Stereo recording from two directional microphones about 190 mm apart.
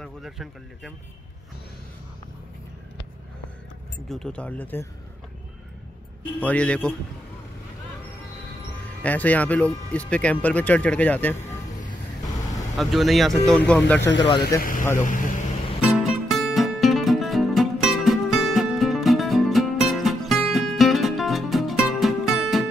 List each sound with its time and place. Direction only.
0.0 s speech: centre (ahead or behind)
4.1 s speech: 5° left (ahead or behind)
6.4 s speech: 5° left (ahead or behind)
9.0 s speech: 10° left (ahead or behind)
12.7 s speech: centre (ahead or behind)
14.1 s speech: 20° left (ahead or behind)
14.6 s speech: 45° left (ahead or behind)
15.8 s music: centre (ahead or behind)